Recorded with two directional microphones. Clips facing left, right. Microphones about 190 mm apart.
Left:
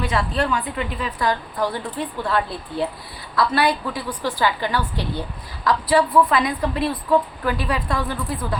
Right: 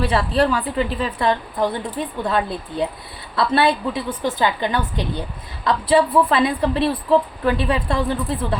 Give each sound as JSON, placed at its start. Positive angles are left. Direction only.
{"t": 0.0, "sound": "a woman's voice", "side_deg": -30}